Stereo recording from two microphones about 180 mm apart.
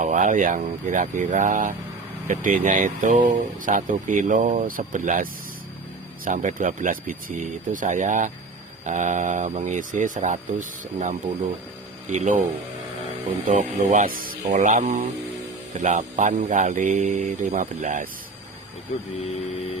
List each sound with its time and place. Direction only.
0.0 s speech: 45° right (ahead or behind)
12.1 s speech: 45° right (ahead or behind)
13.5 s speech: 45° right (ahead or behind)